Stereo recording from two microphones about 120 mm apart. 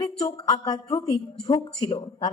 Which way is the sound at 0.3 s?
35° left (ahead or behind).